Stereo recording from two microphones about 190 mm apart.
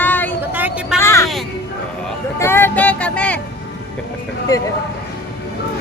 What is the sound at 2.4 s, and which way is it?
Vehicle, 10° left (ahead or behind).